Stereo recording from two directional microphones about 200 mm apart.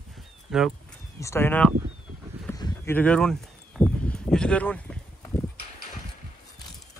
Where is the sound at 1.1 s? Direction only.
15° left (ahead or behind).